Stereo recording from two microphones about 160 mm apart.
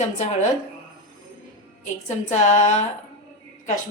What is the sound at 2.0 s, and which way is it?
Speech, 45° left (ahead or behind).